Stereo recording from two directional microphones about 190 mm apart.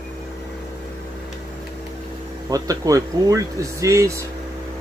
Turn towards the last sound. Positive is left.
turn(degrees=-15)  # may be behind; listen again after turning